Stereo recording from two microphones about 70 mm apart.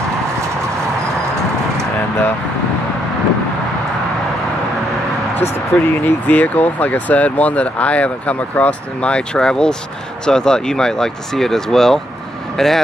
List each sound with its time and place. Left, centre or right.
5.7 s speech: centre